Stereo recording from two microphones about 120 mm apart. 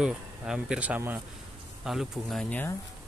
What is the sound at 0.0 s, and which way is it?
Speech, 5° right (ahead or behind).